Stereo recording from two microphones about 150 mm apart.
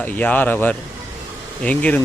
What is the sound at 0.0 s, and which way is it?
Speech, 10° left (ahead or behind).